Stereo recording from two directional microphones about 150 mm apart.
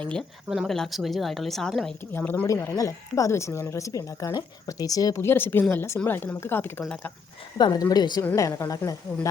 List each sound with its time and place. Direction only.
0.0 s a woman's voice: 5° left (ahead or behind)
2.1 s a woman's voice: 10° left (ahead or behind)
7.6 s speech: 25° left (ahead or behind)